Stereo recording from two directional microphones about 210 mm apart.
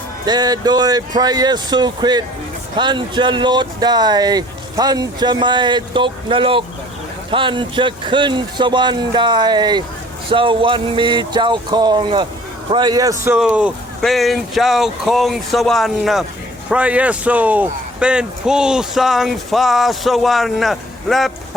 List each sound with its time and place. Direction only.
0.3 s a man's voice: 20° right (ahead or behind); by 21.3 s centre (ahead or behind)